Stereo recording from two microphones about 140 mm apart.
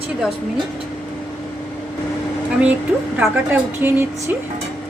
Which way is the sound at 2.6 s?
10° right (ahead or behind).